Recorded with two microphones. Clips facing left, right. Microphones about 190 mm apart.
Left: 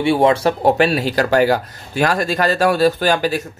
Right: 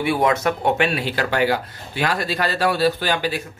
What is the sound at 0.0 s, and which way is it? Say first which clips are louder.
Speech: left 5 dB; 30° left (ahead or behind).